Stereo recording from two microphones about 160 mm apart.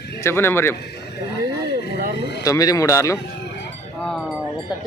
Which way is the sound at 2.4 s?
20° left (ahead or behind).